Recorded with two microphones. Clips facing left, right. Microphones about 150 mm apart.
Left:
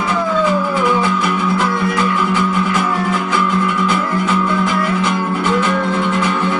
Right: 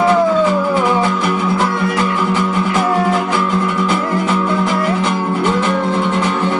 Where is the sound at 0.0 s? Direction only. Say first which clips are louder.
Right 5 dB; 30° right (ahead or behind).